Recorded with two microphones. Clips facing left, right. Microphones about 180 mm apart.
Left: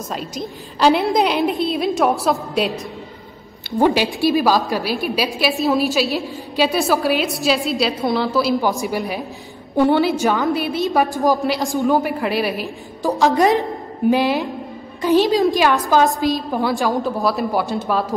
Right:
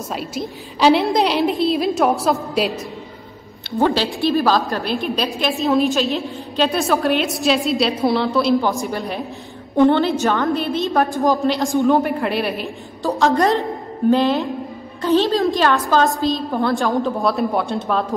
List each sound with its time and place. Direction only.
0.1 s a woman's voice: 5° right (ahead or behind)
3.8 s a woman's voice: 10° left (ahead or behind)
13.4 s a woman's voice: 20° left (ahead or behind)
14.1 s a woman's voice: 5° left (ahead or behind)
16.5 s a woman's voice: 5° left (ahead or behind)